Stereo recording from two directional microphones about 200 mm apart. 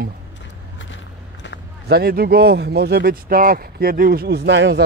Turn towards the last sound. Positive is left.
turn(degrees=-60)  # may be behind; listen again after turning